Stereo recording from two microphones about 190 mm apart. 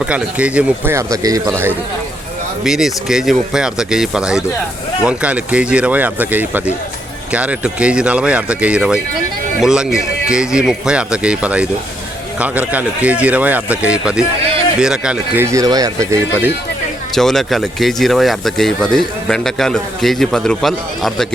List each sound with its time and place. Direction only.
0.0 s speech: 5° right (ahead or behind)
2.6 s speech: centre (ahead or behind)
15.5 s speech: 20° right (ahead or behind)
17.2 s speech: centre (ahead or behind)